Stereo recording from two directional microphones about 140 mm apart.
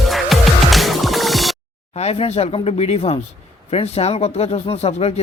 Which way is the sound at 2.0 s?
50° left (ahead or behind).